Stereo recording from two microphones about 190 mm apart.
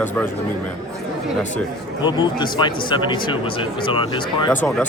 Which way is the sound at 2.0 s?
20° left (ahead or behind).